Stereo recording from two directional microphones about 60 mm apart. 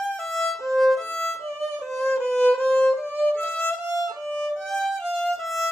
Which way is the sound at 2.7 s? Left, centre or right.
Centre.